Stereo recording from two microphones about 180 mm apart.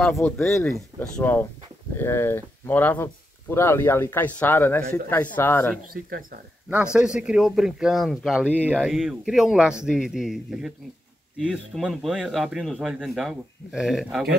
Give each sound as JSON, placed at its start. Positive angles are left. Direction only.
{"t": 0.1, "sound": "speech", "side_deg": 5}
{"t": 6.7, "sound": "speech", "side_deg": -5}